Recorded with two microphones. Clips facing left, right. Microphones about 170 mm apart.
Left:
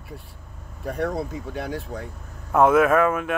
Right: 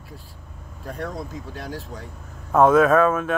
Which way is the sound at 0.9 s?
65° left (ahead or behind).